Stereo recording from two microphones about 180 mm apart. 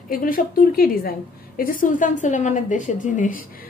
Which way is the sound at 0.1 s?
50° left (ahead or behind).